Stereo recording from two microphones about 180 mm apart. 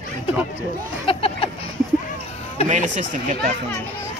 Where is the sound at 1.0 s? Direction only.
30° left (ahead or behind).